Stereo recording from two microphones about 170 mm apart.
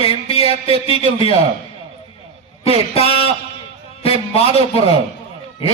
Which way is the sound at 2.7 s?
35° left (ahead or behind).